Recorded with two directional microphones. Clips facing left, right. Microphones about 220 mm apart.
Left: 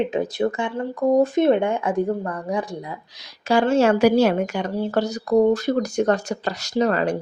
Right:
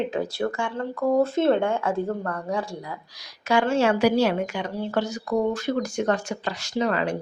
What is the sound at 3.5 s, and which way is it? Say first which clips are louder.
A woman's voice: left 4 dB; 35° left (ahead or behind).